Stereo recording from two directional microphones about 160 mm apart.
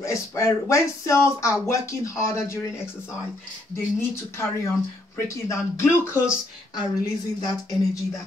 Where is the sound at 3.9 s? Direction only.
15° left (ahead or behind).